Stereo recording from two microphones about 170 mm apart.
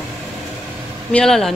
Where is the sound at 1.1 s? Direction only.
5° left (ahead or behind).